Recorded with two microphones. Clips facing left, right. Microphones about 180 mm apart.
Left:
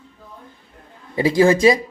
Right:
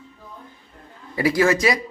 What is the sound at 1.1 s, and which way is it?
Speech, 25° left (ahead or behind).